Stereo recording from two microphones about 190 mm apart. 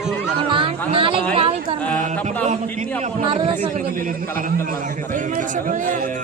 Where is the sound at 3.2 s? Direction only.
25° right (ahead or behind).